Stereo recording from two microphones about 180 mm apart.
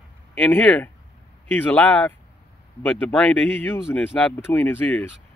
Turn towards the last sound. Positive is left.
turn(degrees=10)  # may be behind; listen again after turning